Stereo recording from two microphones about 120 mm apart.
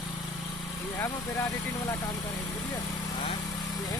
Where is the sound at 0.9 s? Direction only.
20° left (ahead or behind).